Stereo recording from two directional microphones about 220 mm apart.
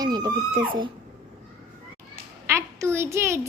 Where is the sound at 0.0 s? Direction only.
20° right (ahead or behind).